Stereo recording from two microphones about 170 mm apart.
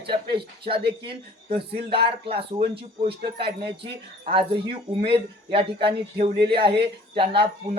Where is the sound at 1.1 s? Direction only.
30° right (ahead or behind).